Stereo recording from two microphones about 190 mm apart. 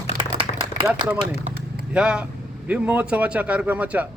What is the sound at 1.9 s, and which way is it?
A man's voice, 5° right (ahead or behind).